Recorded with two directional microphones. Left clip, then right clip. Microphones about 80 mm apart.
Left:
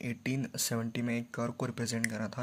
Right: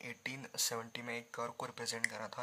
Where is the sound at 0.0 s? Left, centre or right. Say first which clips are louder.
Left 7 dB; left.